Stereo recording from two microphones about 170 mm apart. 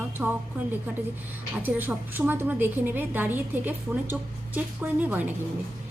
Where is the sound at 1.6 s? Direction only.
10° right (ahead or behind).